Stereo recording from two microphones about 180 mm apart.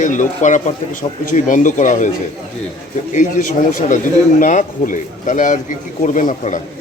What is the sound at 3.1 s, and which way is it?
Speech, 45° left (ahead or behind).